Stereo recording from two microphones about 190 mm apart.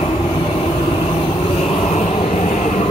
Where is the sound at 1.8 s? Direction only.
35° left (ahead or behind).